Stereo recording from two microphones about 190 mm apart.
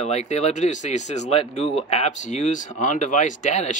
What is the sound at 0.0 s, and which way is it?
Speech, 35° left (ahead or behind).